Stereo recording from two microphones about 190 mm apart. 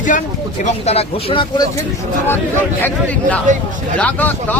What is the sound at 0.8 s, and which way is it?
Speech, 30° left (ahead or behind).